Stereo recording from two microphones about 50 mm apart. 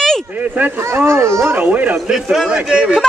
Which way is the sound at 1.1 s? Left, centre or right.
Right.